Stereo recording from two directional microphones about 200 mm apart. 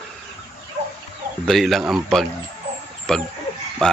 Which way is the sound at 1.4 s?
Centre (ahead or behind).